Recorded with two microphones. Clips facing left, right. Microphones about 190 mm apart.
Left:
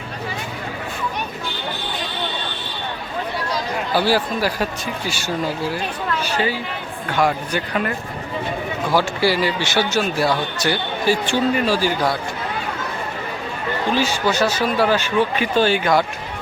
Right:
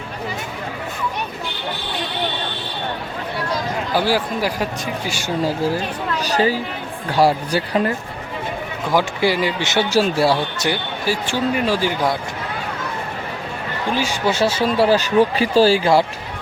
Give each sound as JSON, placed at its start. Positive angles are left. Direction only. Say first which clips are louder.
{"t": 3.9, "sound": "speech", "louder": "left 1 dB", "side_deg": -15}
{"t": 6.2, "sound": "speech", "louder": "right 7 dB", "side_deg": -40}
{"t": 8.9, "sound": "speech", "louder": "right 1 dB", "side_deg": -15}
{"t": 9.9, "sound": "speech", "louder": "right 3 dB", "side_deg": -30}
{"t": 10.7, "sound": "speech", "louder": "left 4 dB", "side_deg": -5}
{"t": 11.6, "sound": "speech", "louder": "even", "side_deg": -20}
{"t": 13.9, "sound": "speech", "louder": "left 1 dB", "side_deg": -15}
{"t": 14.3, "sound": "speech", "louder": "right 4 dB", "side_deg": -25}